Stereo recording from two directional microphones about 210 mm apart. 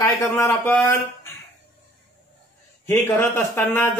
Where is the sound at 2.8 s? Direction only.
10° left (ahead or behind).